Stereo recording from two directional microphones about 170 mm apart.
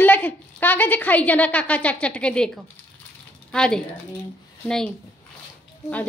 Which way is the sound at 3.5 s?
5° left (ahead or behind).